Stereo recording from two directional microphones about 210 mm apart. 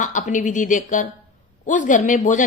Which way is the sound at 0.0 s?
35° left (ahead or behind).